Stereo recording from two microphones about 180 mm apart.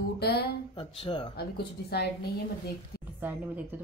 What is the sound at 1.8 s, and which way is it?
Speech, 65° left (ahead or behind).